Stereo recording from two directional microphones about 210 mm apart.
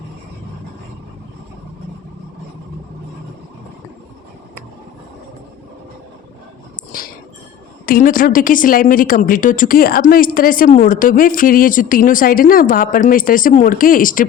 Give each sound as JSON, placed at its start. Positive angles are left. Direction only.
{"t": 6.9, "sound": "chink", "side_deg": 40}
{"t": 7.9, "sound": "a woman's voice", "side_deg": 40}